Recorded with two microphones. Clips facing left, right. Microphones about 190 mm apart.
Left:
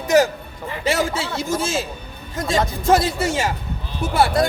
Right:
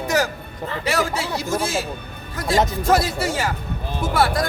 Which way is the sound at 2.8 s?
25° left (ahead or behind).